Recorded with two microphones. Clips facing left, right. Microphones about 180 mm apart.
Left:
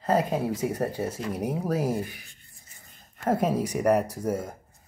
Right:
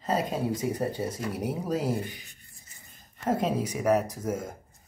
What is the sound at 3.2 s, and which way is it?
Speech, 10° left (ahead or behind).